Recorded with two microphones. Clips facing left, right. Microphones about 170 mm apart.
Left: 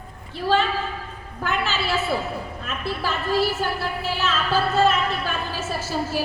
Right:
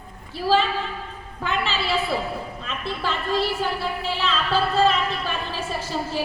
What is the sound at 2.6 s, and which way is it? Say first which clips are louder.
A woman's voice: left 1 dB; 5° left (ahead or behind).